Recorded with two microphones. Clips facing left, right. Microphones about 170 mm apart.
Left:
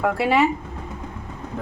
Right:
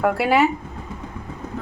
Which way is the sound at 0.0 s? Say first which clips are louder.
Right 1 dB; centre (ahead or behind).